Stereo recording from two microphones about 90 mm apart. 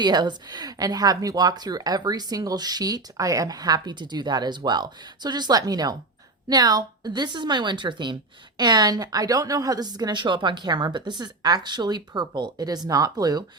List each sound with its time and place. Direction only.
0.0 s a woman's voice: 55° right (ahead or behind)